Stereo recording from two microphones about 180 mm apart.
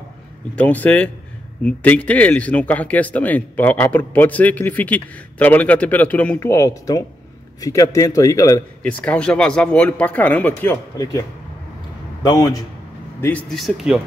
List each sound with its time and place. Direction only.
0.6 s speech: 10° left (ahead or behind)
8.8 s speech: 5° left (ahead or behind)
12.3 s a man's voice: 20° left (ahead or behind)
13.2 s speech: 10° left (ahead or behind)